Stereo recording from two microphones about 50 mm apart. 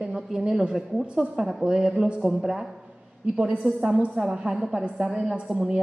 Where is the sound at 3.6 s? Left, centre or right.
Left.